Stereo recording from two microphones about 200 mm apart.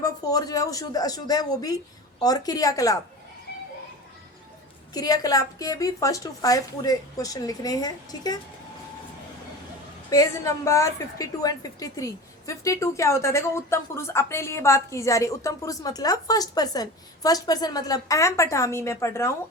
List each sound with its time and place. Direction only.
0.0 s a woman's voice: 15° left (ahead or behind)
4.9 s a woman's voice: 20° left (ahead or behind)
10.1 s a woman's voice: 15° left (ahead or behind)